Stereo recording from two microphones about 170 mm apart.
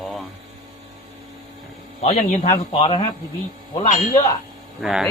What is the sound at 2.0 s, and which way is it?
Speech, 40° left (ahead or behind).